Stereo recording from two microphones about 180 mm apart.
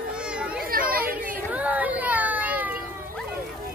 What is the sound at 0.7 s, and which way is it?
Chatter, 55° right (ahead or behind).